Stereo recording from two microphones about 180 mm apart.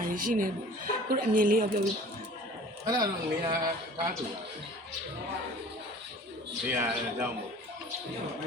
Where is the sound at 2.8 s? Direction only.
20° right (ahead or behind).